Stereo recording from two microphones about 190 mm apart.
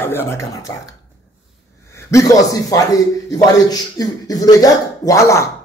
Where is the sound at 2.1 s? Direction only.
15° left (ahead or behind).